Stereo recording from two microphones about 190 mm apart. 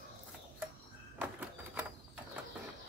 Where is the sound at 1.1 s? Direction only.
10° right (ahead or behind).